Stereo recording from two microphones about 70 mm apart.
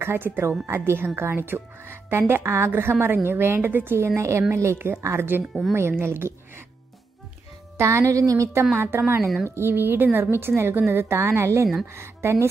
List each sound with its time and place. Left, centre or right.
0.0 s a woman's voice: right
5.4 s speech: centre
5.8 s a woman's voice: right
7.7 s speech: right
8.7 s a woman's voice: right